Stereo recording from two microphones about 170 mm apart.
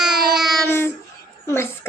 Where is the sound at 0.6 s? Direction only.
15° left (ahead or behind).